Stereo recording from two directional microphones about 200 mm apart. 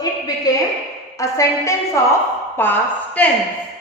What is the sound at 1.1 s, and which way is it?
A woman's voice, 15° left (ahead or behind).